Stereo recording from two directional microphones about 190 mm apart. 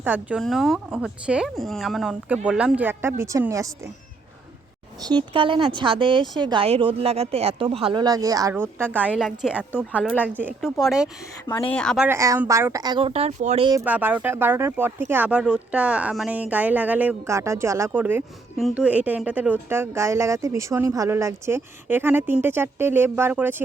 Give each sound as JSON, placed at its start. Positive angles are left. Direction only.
{"t": 0.0, "sound": "speech", "side_deg": -10}
{"t": 5.0, "sound": "speech", "side_deg": -25}
{"t": 12.0, "sound": "speech", "side_deg": -15}
{"t": 13.8, "sound": "speech", "side_deg": -10}